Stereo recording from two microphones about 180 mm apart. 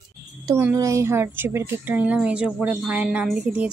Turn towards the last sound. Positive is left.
turn(degrees=-5)  # may be behind; listen again after turning